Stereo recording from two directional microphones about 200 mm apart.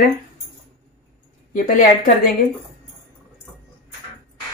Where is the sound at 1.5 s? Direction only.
40° left (ahead or behind).